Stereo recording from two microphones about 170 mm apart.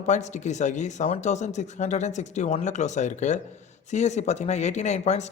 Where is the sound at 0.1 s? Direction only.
45° left (ahead or behind).